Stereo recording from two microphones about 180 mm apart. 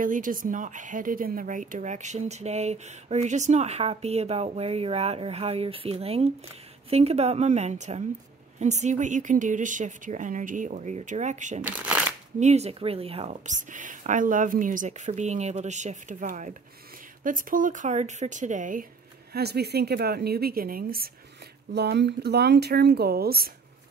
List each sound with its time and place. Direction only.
0.0 s a woman's voice: 50° right (ahead or behind)
11.6 s speech: 10° right (ahead or behind)
12.4 s a woman's voice: 40° right (ahead or behind)
19.3 s a woman's voice: 60° right (ahead or behind)
21.7 s a woman's voice: 70° right (ahead or behind)